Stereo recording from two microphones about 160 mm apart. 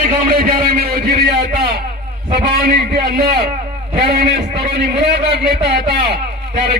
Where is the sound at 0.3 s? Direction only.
65° right (ahead or behind).